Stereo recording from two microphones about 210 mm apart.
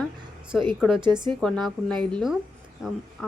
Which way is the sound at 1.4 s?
5° left (ahead or behind).